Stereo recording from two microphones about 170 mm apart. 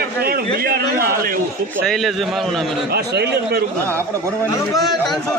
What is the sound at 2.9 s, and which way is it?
Speech, 75° right (ahead or behind).